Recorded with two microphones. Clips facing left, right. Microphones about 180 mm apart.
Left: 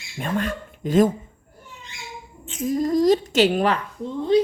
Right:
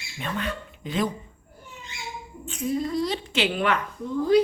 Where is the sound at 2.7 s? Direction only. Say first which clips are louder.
Left 8 dB; 40° left (ahead or behind); by 4.4 s 25° left (ahead or behind).